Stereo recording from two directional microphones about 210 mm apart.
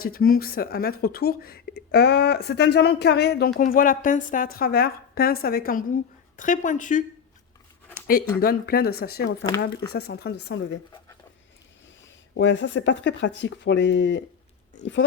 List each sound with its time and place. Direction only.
0.0 s speech: 45° left (ahead or behind)
3.6 s a woman's voice: 40° left (ahead or behind)
8.4 s speech: 45° left (ahead or behind)
12.3 s speech: 60° left (ahead or behind)